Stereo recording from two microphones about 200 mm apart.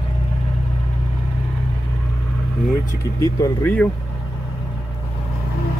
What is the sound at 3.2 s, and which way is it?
Speech, 15° left (ahead or behind).